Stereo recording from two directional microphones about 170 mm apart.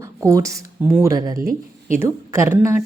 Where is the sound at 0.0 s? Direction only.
20° right (ahead or behind).